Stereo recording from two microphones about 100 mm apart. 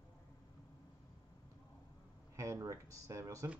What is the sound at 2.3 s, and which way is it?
Speech, 30° right (ahead or behind).